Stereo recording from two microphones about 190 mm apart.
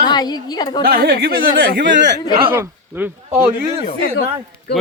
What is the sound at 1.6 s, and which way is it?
Speech, 70° right (ahead or behind).